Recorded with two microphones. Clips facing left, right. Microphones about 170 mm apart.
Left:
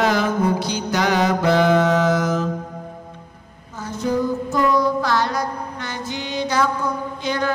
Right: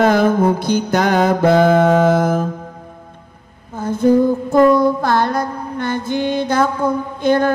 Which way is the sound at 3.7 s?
50° right (ahead or behind).